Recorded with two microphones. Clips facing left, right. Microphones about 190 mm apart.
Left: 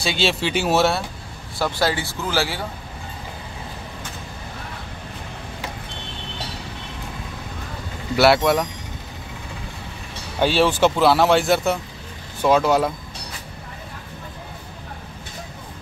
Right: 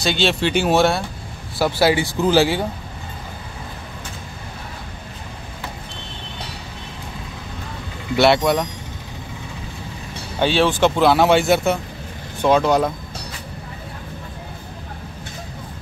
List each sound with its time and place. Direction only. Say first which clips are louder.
0.0 s speech: right 3 dB; 5° left (ahead or behind)
1.6 s speech: right 5 dB; 10° right (ahead or behind)
8.2 s speech: even; 5° left (ahead or behind)
10.4 s speech: right 1 dB; 10° left (ahead or behind)